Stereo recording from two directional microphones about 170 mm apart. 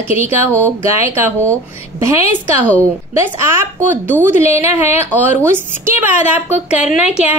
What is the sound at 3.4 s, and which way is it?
A woman's voice, 15° right (ahead or behind).